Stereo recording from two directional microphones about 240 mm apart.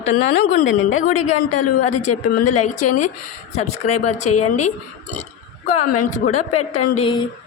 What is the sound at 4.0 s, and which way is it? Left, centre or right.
Speech, left.